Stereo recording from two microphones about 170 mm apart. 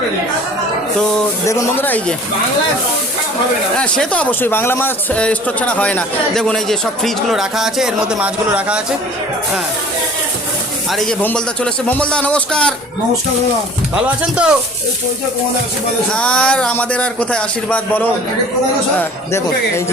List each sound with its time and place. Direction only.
1.5 s a man's voice: 15° left (ahead or behind)
3.8 s a man's voice: 5° left (ahead or behind)
10.9 s a man's voice: centre (ahead or behind)
13.9 s speech: 5° right (ahead or behind)
16.1 s a man's voice: 5° left (ahead or behind)